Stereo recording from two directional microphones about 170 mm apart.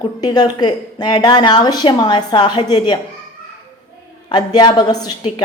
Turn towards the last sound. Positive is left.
turn(degrees=25)  # may be behind; listen again after turning